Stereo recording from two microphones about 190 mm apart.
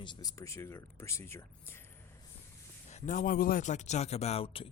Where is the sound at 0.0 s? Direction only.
20° left (ahead or behind).